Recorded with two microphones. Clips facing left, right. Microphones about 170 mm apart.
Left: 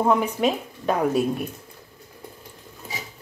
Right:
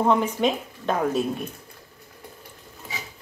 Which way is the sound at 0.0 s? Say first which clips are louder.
Even; 5° left (ahead or behind).